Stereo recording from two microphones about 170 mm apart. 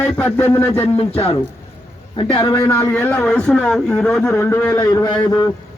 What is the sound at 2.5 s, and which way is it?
A man's voice, 10° left (ahead or behind).